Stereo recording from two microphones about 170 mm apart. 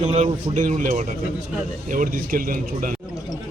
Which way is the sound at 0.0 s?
40° right (ahead or behind).